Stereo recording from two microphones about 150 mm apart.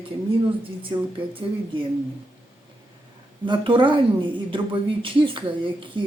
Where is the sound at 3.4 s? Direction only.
35° right (ahead or behind).